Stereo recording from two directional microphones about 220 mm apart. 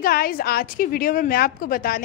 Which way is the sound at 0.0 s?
40° left (ahead or behind).